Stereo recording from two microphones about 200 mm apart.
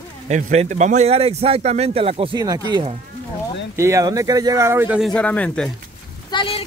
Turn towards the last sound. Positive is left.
turn(degrees=25)  # may be behind; listen again after turning